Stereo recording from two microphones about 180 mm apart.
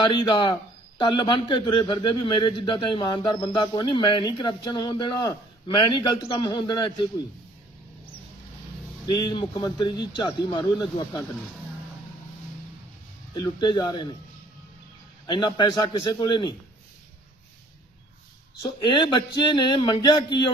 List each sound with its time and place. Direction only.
0.0 s a man's voice: 25° left (ahead or behind)
9.0 s a man's voice: 25° left (ahead or behind)
13.3 s a man's voice: 25° left (ahead or behind)
15.3 s a man's voice: 25° left (ahead or behind)
18.6 s a man's voice: 25° left (ahead or behind)